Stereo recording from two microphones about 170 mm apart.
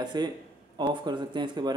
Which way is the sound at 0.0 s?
25° right (ahead or behind).